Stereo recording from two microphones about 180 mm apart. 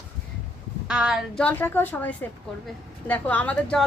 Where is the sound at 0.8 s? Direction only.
5° right (ahead or behind).